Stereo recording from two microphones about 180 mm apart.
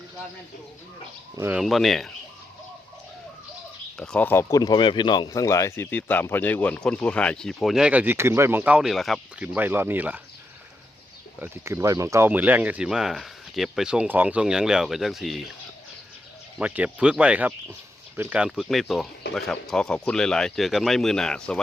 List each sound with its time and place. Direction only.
1.4 s speech: 10° right (ahead or behind)
1.6 s speech: centre (ahead or behind)
3.9 s speech: 5° left (ahead or behind)
9.6 s speech: 10° right (ahead or behind)
11.3 s speech: 15° right (ahead or behind)
16.6 s speech: 5° right (ahead or behind)